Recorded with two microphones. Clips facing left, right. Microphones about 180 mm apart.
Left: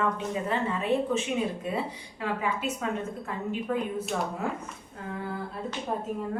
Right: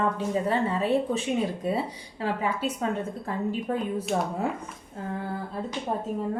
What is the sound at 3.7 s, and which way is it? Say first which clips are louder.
Speech: left 1 dB; 35° right (ahead or behind).